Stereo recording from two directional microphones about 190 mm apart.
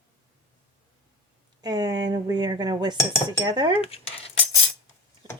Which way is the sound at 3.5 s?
25° right (ahead or behind).